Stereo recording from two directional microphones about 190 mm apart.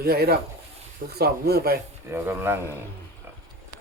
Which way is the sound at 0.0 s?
55° right (ahead or behind).